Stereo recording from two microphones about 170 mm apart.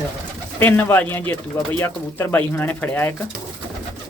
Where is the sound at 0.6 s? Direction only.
10° left (ahead or behind).